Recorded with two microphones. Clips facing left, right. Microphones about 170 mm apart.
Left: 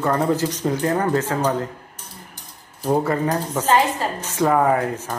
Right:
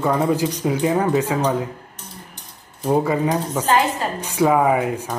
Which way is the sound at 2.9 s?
10° right (ahead or behind).